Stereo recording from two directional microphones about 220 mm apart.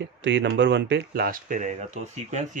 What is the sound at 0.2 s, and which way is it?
Speech, 55° right (ahead or behind).